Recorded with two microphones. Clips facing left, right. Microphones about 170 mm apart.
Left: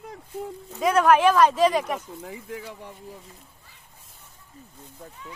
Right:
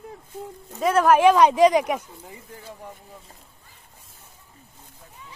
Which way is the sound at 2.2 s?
90° left.